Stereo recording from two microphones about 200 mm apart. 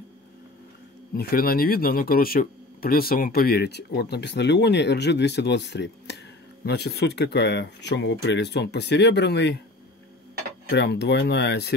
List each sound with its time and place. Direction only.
1.1 s speech: 50° left (ahead or behind)
10.7 s speech: 55° left (ahead or behind)